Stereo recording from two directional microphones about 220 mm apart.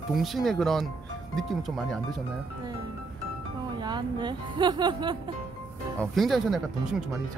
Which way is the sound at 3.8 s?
20° right (ahead or behind).